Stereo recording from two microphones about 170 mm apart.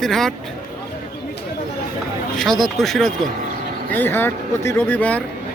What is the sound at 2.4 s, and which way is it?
Speech, centre (ahead or behind).